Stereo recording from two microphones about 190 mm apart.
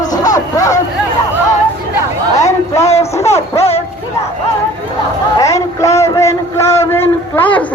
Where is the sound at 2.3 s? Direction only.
15° left (ahead or behind).